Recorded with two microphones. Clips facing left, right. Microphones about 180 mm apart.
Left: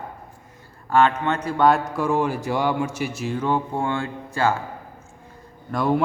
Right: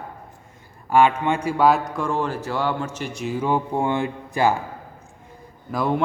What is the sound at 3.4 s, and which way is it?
Speech, 10° right (ahead or behind).